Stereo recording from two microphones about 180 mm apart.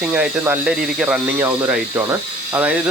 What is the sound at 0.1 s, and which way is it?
Speech, 10° right (ahead or behind).